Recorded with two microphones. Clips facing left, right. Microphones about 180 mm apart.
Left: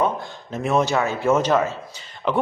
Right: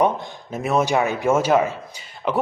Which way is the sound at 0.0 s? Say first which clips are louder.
Right 3 dB; 20° right (ahead or behind).